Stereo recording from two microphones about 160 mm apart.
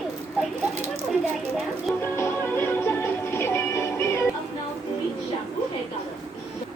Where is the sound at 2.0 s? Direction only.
15° left (ahead or behind).